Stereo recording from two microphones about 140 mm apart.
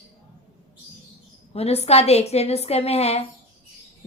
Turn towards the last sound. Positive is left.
turn(degrees=50)  # may be behind; listen again after turning